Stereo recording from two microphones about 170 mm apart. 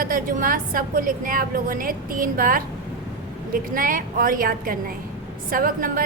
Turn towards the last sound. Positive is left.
turn(degrees=-55)  # may be behind; listen again after turning